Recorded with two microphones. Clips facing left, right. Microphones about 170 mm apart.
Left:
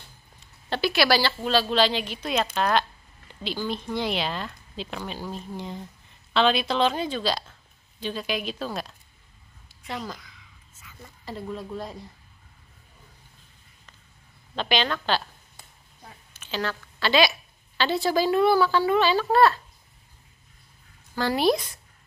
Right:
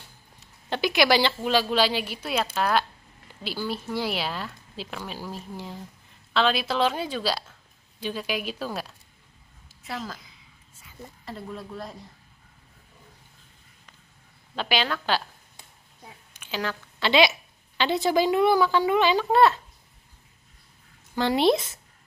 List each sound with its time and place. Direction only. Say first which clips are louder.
0.7 s a woman's voice: right 1 dB; 15° right (ahead or behind); by 10.1 s centre (ahead or behind)
10.2 s whispering: left 1 dB; 30° right (ahead or behind)
11.2 s a woman's voice: left 3 dB; centre (ahead or behind)
14.5 s a woman's voice: left 1 dB; 10° right (ahead or behind)
16.3 s a woman's voice: left 1 dB; 10° right (ahead or behind)
21.1 s speech: right 1 dB; 20° right (ahead or behind)